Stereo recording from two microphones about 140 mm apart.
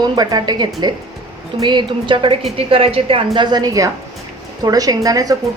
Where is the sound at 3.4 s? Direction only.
30° right (ahead or behind).